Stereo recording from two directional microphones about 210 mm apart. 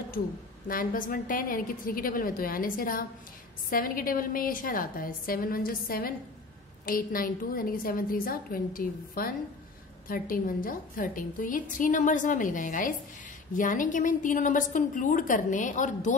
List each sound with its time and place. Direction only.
0.7 s a woman's voice: 40° left (ahead or behind)